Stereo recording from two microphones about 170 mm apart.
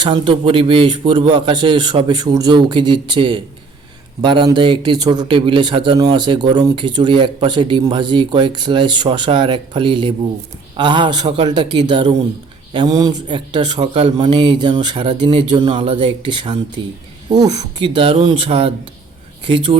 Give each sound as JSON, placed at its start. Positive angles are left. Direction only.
{"t": 0.0, "sound": "a man's voice", "side_deg": -30}